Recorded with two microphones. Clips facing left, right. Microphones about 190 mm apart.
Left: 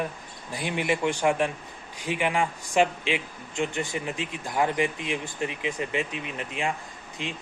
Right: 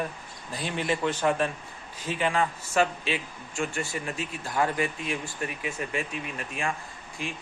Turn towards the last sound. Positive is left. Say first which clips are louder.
# left 1 dB
turn(degrees=20)  # may be behind; listen again after turning